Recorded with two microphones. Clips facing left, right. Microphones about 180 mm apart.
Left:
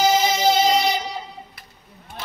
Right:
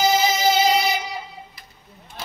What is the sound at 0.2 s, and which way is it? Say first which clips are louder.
Music: left 1 dB; 5° right (ahead or behind).